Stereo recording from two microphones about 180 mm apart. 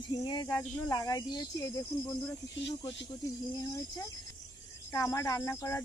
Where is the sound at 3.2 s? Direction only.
15° left (ahead or behind).